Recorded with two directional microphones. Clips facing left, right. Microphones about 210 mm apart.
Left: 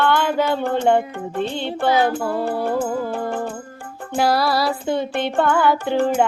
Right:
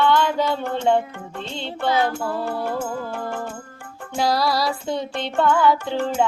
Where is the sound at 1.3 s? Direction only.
55° left (ahead or behind).